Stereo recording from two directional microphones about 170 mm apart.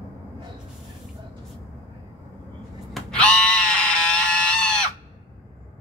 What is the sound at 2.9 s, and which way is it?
Screaming, 5° left (ahead or behind).